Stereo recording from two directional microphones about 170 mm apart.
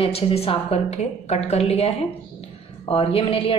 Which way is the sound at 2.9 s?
35° left (ahead or behind).